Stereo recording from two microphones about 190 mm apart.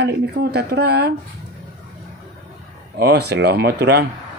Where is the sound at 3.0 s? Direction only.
60° right (ahead or behind).